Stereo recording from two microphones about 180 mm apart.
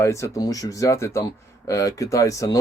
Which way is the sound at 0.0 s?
15° left (ahead or behind).